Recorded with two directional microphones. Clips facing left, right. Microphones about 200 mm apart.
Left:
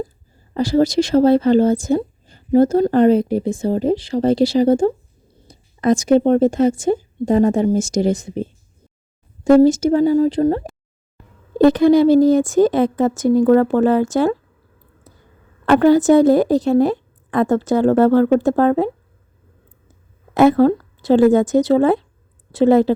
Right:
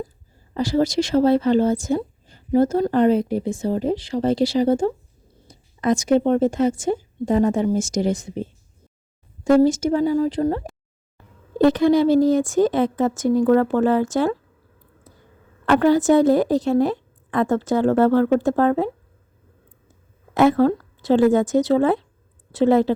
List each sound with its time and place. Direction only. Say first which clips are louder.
0.5 s speech: left 4 dB; 35° left (ahead or behind)
11.6 s speech: left 4 dB; 40° left (ahead or behind)
15.6 s speech: left 4 dB; 35° left (ahead or behind)
20.3 s speech: left 4 dB; 35° left (ahead or behind)